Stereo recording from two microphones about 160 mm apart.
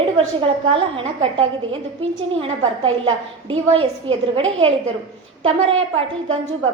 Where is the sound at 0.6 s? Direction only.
35° right (ahead or behind).